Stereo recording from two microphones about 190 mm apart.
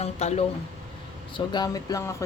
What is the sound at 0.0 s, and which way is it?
Speech, 35° left (ahead or behind).